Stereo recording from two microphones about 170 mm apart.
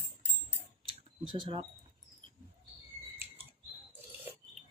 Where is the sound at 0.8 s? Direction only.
30° right (ahead or behind).